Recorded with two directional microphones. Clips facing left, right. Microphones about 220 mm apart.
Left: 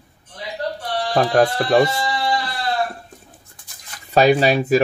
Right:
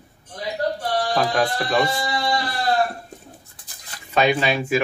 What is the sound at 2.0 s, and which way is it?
Sheep, 45° right (ahead or behind).